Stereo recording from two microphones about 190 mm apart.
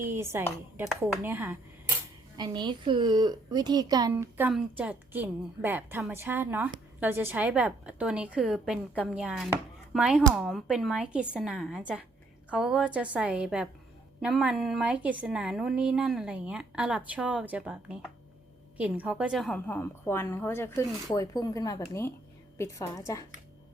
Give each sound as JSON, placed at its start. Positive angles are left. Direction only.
{"t": 0.0, "sound": "a woman's voice", "side_deg": -15}
{"t": 2.4, "sound": "a woman's voice", "side_deg": -25}